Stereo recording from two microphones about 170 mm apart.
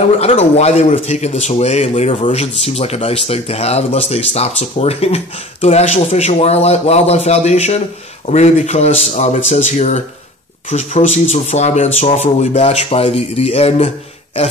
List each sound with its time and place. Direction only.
0.2 s a man's voice: 40° left (ahead or behind)